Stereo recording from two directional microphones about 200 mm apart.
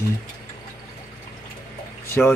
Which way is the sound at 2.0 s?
10° left (ahead or behind).